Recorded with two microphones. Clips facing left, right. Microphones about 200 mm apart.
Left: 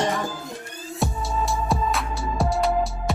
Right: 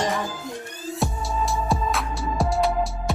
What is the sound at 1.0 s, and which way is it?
Music, centre (ahead or behind).